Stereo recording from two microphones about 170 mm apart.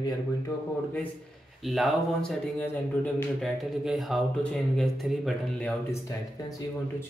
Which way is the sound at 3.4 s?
Centre (ahead or behind).